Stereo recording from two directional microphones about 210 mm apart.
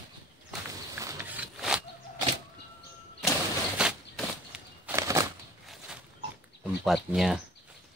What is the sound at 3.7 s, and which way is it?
Bird flight, 5° right (ahead or behind).